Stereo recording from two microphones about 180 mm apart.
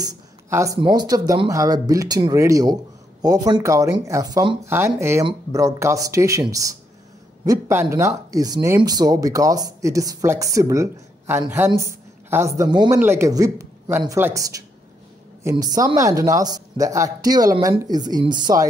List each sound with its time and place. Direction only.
0.0 s speech: 15° right (ahead or behind)